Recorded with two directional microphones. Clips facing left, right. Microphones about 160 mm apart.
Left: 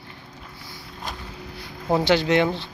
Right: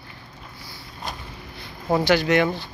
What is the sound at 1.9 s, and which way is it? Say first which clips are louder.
Speech: even; 25° left (ahead or behind).